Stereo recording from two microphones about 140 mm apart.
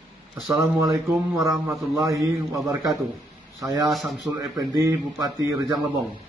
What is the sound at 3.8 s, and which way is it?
Speech, centre (ahead or behind).